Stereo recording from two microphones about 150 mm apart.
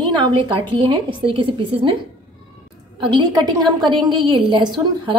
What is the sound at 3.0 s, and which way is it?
A woman's voice, 30° right (ahead or behind).